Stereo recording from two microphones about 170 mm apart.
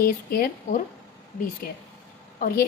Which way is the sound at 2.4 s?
60° left (ahead or behind).